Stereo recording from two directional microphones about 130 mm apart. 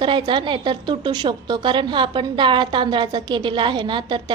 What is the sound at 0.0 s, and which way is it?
A woman's voice, 35° right (ahead or behind).